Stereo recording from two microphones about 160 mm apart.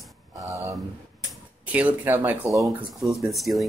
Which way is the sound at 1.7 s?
10° right (ahead or behind).